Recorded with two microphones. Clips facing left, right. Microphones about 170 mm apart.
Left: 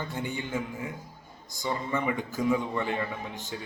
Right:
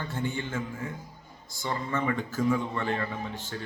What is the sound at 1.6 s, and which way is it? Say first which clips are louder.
A man's voice: even; 15° left (ahead or behind).